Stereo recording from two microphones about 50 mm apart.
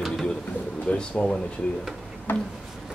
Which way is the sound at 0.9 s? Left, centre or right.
Left.